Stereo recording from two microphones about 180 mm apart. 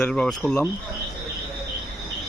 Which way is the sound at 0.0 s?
5° left (ahead or behind).